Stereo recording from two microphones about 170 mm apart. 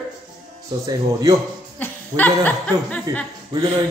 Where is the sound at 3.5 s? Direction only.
20° right (ahead or behind).